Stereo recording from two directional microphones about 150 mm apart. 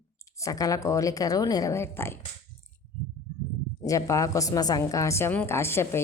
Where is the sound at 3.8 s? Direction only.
20° left (ahead or behind).